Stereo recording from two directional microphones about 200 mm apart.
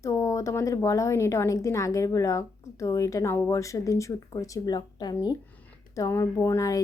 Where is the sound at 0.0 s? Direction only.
15° left (ahead or behind).